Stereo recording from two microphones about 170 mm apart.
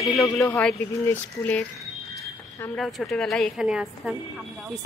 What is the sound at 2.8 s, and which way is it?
A woman's voice, centre (ahead or behind).